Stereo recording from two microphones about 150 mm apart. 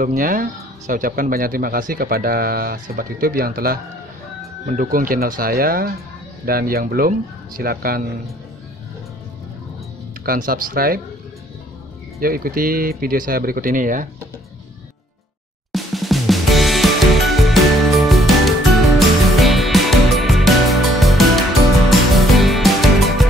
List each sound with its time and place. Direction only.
0.0 s speech: 65° right (ahead or behind)
4.6 s speech: 65° right (ahead or behind)
10.2 s speech: 70° right (ahead or behind)
12.2 s speech: 70° right (ahead or behind)
15.7 s music: centre (ahead or behind)